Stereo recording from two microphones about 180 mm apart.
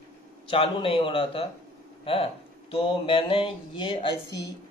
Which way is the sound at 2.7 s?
30° left (ahead or behind).